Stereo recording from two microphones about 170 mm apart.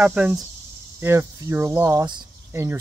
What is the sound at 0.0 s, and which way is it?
Speech, 10° right (ahead or behind).